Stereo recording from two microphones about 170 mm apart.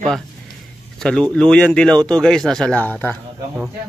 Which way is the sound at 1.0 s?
5° left (ahead or behind).